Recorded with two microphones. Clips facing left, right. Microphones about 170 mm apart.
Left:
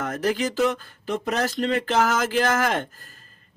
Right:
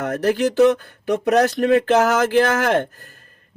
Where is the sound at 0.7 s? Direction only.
70° right (ahead or behind).